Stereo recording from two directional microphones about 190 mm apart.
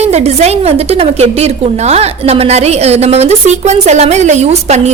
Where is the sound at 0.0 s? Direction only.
35° right (ahead or behind).